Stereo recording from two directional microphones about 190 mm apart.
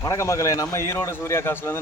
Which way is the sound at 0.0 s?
15° left (ahead or behind).